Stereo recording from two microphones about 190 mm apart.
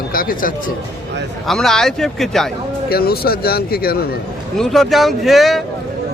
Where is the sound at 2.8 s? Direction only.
55° left (ahead or behind).